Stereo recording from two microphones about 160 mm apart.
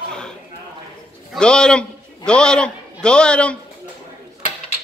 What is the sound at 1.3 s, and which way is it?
A man's voice, 5° left (ahead or behind).